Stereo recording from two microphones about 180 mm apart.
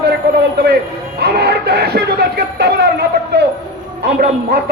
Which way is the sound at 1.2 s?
65° right (ahead or behind).